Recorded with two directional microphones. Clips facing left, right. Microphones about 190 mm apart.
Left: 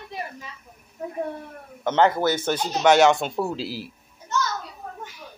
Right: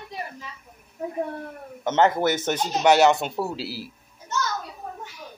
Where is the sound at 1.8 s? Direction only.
20° right (ahead or behind).